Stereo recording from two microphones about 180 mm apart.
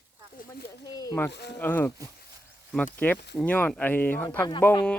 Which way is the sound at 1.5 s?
10° left (ahead or behind).